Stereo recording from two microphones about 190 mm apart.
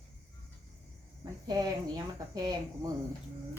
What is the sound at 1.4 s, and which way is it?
Speech, 20° right (ahead or behind).